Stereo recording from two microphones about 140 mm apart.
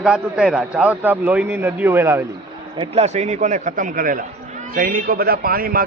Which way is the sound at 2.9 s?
50° right (ahead or behind).